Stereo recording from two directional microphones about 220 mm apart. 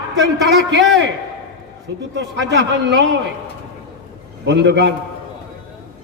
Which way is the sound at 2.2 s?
50° right (ahead or behind).